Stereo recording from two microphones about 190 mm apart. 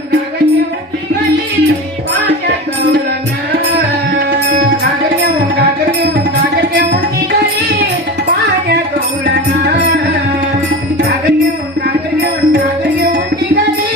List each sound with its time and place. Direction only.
12.2 s music: 50° right (ahead or behind)